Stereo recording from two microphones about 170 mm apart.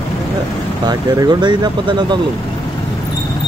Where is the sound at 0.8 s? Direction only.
25° right (ahead or behind).